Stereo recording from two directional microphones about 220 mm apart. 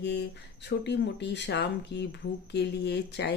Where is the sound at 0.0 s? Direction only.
50° left (ahead or behind).